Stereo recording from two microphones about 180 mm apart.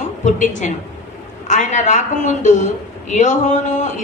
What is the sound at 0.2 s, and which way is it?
A woman's voice, 40° left (ahead or behind).